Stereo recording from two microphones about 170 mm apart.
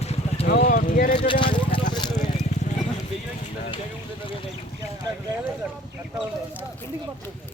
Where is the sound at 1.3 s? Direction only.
30° left (ahead or behind).